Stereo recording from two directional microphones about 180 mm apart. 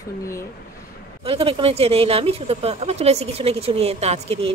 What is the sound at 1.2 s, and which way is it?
Speech, 30° right (ahead or behind).